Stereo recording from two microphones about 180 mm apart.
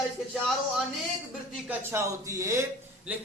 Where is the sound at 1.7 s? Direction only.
15° right (ahead or behind).